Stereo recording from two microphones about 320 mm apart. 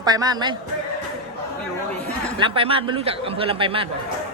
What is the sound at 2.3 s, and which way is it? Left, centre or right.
Speech, centre.